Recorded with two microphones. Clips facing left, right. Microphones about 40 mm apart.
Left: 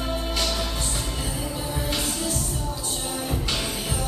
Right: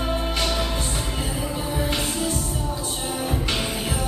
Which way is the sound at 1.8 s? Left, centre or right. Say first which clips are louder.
Right 3 dB; centre.